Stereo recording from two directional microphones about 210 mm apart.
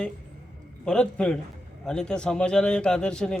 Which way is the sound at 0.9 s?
5° left (ahead or behind).